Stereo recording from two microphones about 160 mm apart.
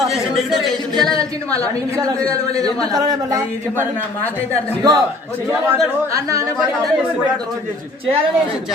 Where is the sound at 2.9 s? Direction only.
25° right (ahead or behind).